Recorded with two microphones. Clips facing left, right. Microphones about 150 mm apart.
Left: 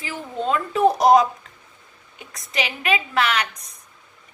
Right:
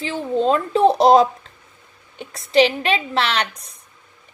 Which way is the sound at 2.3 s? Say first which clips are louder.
Right 12 dB; 30° right (ahead or behind).